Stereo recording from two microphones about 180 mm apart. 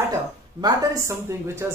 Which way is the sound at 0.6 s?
20° right (ahead or behind).